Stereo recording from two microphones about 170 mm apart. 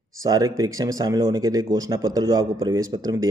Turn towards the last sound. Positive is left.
turn(degrees=-20)  # may be behind; listen again after turning